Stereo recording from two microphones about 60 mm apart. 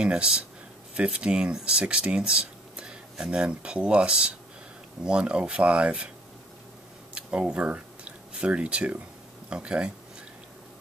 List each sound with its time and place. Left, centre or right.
0.0 s speech: centre
7.2 s speech: centre